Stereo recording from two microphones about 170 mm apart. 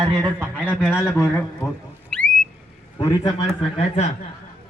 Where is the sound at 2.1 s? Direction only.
5° left (ahead or behind).